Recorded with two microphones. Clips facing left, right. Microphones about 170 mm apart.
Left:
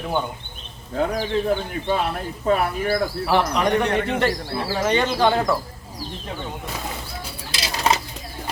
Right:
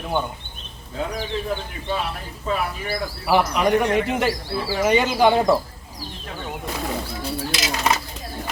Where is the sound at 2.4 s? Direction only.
50° left (ahead or behind).